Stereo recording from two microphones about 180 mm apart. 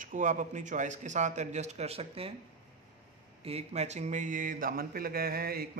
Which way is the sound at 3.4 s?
35° right (ahead or behind).